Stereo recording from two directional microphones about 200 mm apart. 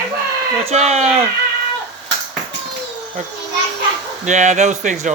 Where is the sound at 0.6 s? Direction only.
30° right (ahead or behind).